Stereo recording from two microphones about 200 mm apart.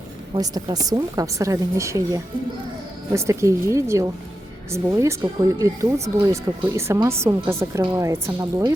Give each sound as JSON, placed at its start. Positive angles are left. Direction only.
{"t": 0.3, "sound": "speech", "side_deg": -20}